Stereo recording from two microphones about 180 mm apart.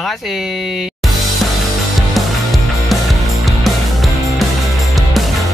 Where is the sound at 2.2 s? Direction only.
Centre (ahead or behind).